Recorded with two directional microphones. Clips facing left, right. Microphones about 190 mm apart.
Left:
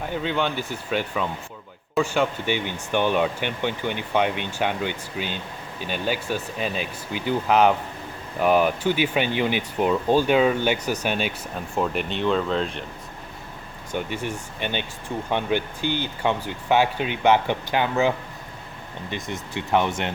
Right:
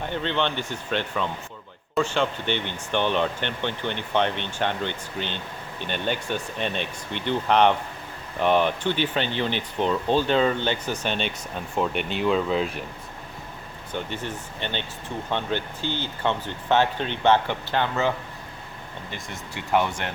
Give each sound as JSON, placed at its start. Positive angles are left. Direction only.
{"t": 0.0, "sound": "speech", "side_deg": 5}
{"t": 13.9, "sound": "speech", "side_deg": 10}
{"t": 19.1, "sound": "speech", "side_deg": 20}